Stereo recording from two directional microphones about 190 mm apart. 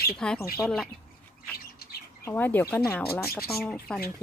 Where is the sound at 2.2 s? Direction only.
10° left (ahead or behind).